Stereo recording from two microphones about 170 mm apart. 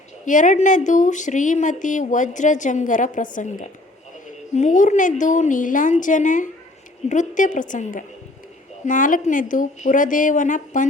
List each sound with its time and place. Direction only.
0.3 s speech: 50° left (ahead or behind)